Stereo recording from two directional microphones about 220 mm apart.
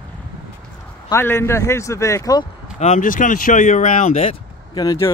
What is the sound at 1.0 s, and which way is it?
A man's voice, 10° left (ahead or behind).